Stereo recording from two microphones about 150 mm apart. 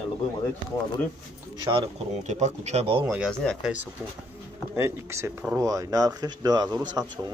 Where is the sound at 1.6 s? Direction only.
35° right (ahead or behind).